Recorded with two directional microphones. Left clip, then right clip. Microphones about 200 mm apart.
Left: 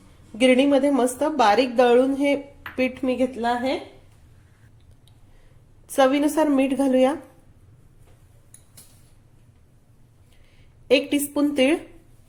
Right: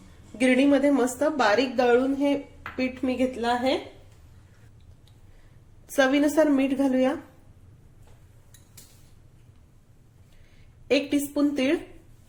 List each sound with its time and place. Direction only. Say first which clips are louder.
0.3 s a woman's voice: left 4 dB; 20° left (ahead or behind)
3.5 s a woman's voice: even; 5° left (ahead or behind)
5.8 s a woman's voice: left 3 dB; 20° left (ahead or behind)
10.8 s a woman's voice: left 4 dB; 25° left (ahead or behind)